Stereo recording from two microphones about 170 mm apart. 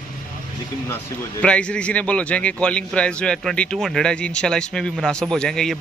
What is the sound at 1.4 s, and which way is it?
A man's voice, 5° left (ahead or behind).